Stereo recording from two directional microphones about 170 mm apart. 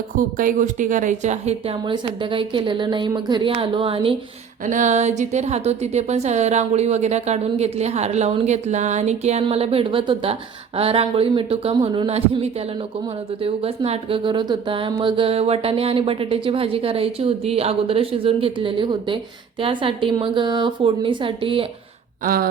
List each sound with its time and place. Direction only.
0.2 s speech: 50° right (ahead or behind); by 4.2 s 30° right (ahead or behind)
4.6 s a woman's voice: 50° right (ahead or behind); by 21.7 s 30° right (ahead or behind)
22.2 s a sound: 60° right (ahead or behind)